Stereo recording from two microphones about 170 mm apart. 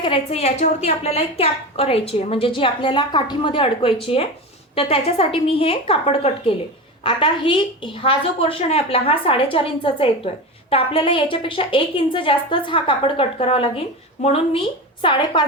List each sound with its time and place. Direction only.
0.0 s a woman's voice: 35° left (ahead or behind)